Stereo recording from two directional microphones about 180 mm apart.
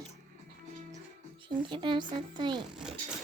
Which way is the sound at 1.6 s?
25° right (ahead or behind).